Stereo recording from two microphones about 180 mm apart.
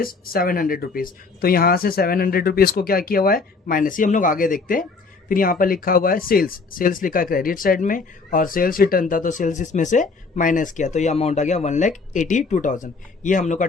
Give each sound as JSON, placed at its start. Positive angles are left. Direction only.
{"t": 0.0, "sound": "speech", "side_deg": 55}